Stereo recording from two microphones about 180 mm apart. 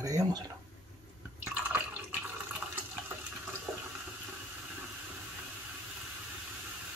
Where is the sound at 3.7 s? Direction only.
Centre (ahead or behind).